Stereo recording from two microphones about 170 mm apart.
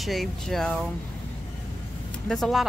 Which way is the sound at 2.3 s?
Centre (ahead or behind).